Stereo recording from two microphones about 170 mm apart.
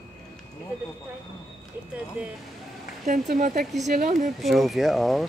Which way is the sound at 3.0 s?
45° right (ahead or behind).